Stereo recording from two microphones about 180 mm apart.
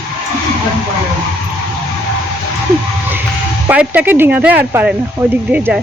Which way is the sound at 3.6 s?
10° right (ahead or behind).